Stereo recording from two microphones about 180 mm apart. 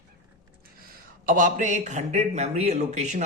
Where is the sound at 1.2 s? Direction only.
45° right (ahead or behind).